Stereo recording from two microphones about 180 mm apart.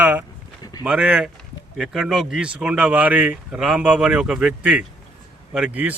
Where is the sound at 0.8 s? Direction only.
5° right (ahead or behind).